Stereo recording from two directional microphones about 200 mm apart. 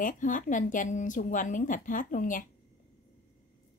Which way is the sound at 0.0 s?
40° left (ahead or behind).